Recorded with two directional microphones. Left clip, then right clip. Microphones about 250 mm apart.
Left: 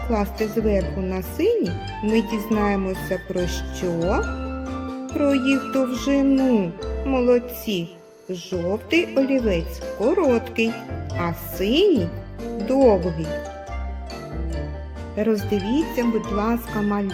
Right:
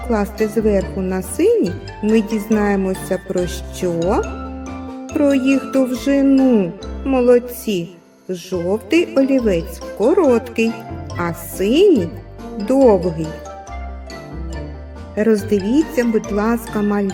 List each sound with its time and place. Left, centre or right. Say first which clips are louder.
0.1 s music: right 5 dB; right
10.0 s speech: right 6 dB; right
11.2 s music: right 5 dB; right
15.1 s speech: right 6 dB; right